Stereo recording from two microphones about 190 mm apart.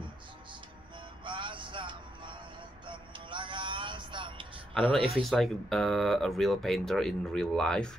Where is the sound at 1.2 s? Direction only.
25° right (ahead or behind).